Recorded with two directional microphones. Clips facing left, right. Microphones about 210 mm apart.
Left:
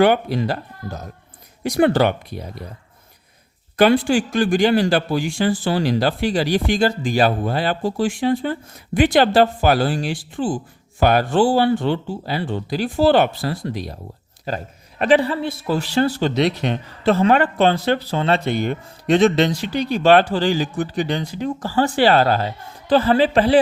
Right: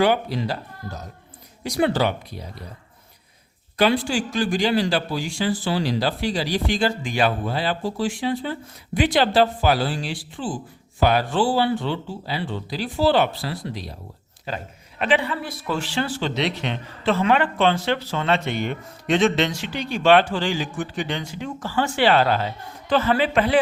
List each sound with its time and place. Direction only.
0.0 s speech: 55° left (ahead or behind)
3.8 s a man's voice: 55° left (ahead or behind); by 23.6 s 35° left (ahead or behind)